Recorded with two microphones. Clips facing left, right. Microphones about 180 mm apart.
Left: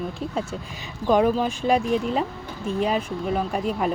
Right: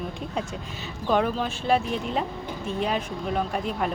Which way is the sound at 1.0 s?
10° left (ahead or behind).